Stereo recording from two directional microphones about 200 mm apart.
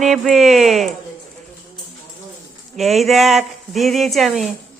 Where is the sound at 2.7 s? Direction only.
Centre (ahead or behind).